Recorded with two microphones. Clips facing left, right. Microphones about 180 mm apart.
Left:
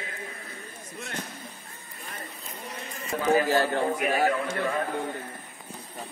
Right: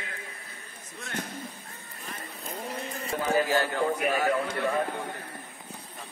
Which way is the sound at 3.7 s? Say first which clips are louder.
Left 1 dB; 45° left (ahead or behind).